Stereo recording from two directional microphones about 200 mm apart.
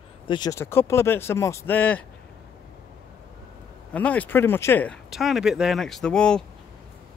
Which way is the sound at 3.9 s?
5° left (ahead or behind).